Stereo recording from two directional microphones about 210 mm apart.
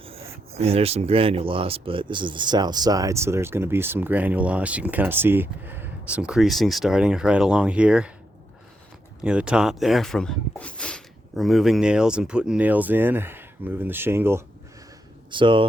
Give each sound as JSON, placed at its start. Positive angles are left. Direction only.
{"t": 0.0, "sound": "speech", "side_deg": -30}
{"t": 9.2, "sound": "speech", "side_deg": -5}
{"t": 15.3, "sound": "speech", "side_deg": -25}